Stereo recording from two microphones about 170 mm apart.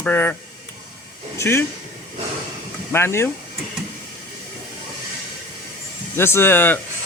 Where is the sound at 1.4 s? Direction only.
15° left (ahead or behind).